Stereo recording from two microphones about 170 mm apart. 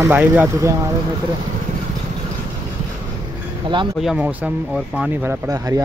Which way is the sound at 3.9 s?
5° right (ahead or behind).